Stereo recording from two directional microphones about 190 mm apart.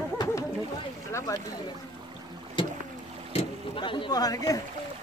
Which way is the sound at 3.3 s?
25° left (ahead or behind).